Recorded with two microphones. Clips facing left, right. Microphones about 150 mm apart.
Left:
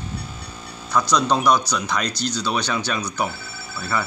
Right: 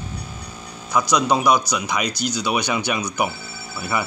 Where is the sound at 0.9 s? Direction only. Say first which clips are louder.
Right 1 dB; 10° right (ahead or behind).